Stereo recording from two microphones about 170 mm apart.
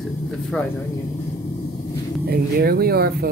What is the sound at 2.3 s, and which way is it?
Speech, 65° right (ahead or behind).